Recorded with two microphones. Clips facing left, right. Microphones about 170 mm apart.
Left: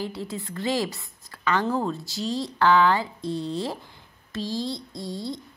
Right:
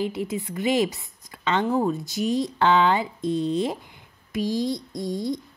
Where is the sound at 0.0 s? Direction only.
20° right (ahead or behind).